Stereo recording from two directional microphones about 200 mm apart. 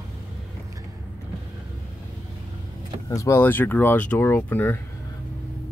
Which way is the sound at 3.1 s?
15° left (ahead or behind).